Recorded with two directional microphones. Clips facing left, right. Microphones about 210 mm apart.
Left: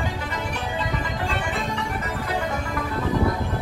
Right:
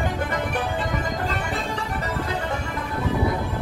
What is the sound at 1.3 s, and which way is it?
Music, 40° right (ahead or behind).